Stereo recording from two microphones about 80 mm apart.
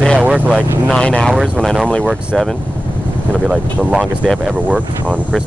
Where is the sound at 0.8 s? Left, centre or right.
Centre.